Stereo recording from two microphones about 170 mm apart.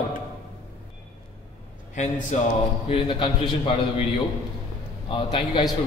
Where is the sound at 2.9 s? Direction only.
30° left (ahead or behind).